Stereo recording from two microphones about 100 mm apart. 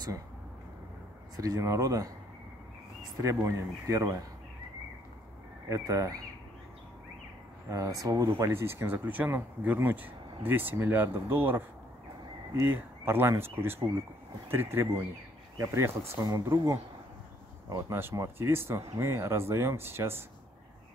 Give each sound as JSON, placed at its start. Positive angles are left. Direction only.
{"t": 1.3, "sound": "speech", "side_deg": -40}
{"t": 5.7, "sound": "speech", "side_deg": -40}
{"t": 7.7, "sound": "speech", "side_deg": -35}
{"t": 12.6, "sound": "speech", "side_deg": -20}
{"t": 16.2, "sound": "speech", "side_deg": -40}